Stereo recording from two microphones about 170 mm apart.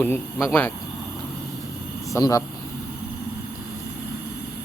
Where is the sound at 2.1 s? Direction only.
20° left (ahead or behind).